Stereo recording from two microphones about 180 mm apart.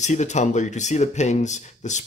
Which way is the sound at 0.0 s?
40° left (ahead or behind).